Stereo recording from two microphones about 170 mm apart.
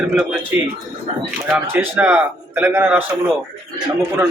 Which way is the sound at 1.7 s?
10° right (ahead or behind).